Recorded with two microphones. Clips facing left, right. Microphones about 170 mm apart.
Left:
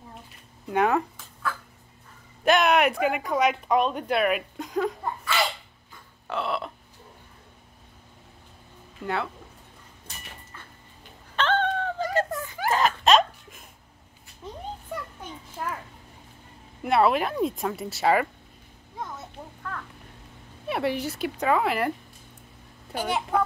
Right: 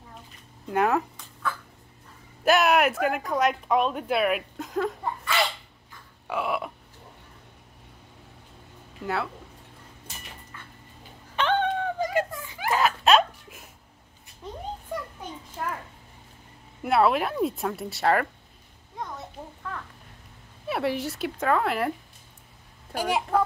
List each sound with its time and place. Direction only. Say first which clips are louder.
0.7 s a sound: left 1 dB; centre (ahead or behind)
2.4 s speech: even; 5° right (ahead or behind)
6.2 s burping: right 1 dB; 10° right (ahead or behind)
9.0 s a woman's voice: even; centre (ahead or behind)
11.3 s cat: even; 15° right (ahead or behind)
12.3 s a sound: left 6 dB; 50° left (ahead or behind)
12.6 s giggle: even; 5° right (ahead or behind)
15.6 s a sound: even; 5° left (ahead or behind)
16.8 s a woman's voice: even; centre (ahead or behind)
18.9 s children playing: right 1 dB; centre (ahead or behind)
20.6 s a woman's voice: even; centre (ahead or behind)
22.9 s speech: right 1 dB; 10° right (ahead or behind)